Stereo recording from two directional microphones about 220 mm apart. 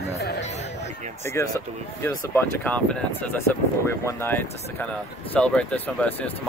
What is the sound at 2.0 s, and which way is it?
Speech, 10° left (ahead or behind).